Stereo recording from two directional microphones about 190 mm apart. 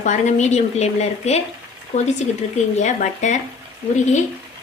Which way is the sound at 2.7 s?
40° left (ahead or behind).